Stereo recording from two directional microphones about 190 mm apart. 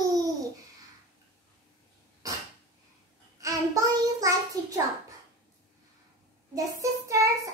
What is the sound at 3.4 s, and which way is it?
Child singing, 15° right (ahead or behind).